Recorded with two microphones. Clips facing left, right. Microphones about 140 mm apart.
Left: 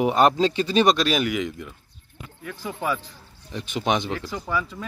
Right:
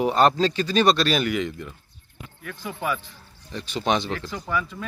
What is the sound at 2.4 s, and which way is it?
Speech, 25° left (ahead or behind).